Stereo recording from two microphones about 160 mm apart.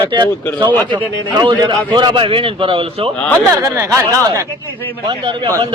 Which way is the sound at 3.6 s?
20° right (ahead or behind).